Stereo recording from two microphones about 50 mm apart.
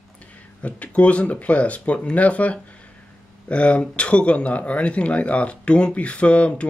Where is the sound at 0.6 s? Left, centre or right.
Left.